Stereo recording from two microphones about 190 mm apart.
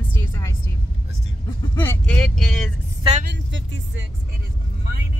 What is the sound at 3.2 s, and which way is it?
Speech, 60° right (ahead or behind).